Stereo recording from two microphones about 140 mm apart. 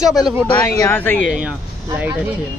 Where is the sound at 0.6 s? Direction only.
20° left (ahead or behind).